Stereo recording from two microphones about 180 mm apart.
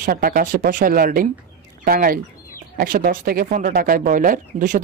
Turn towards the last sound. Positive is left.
turn(degrees=-45)  # may be behind; listen again after turning